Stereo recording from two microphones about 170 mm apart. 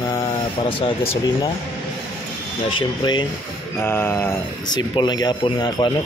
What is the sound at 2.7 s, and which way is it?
Speech, 25° left (ahead or behind).